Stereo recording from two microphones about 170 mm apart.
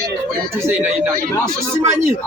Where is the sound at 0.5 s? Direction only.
10° right (ahead or behind).